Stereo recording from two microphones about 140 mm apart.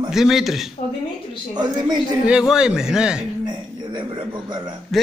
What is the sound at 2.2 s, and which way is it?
Speech, 5° right (ahead or behind).